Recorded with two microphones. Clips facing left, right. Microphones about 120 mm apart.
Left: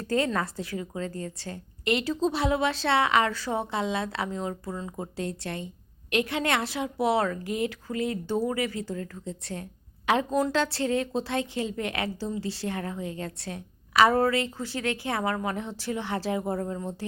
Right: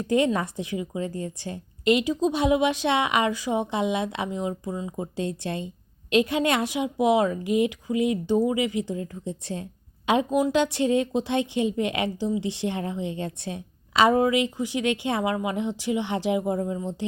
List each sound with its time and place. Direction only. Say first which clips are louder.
0.0 s a woman's voice: right 4 dB; 15° right (ahead or behind)
10.2 s a woman's voice: right 3 dB; 10° right (ahead or behind)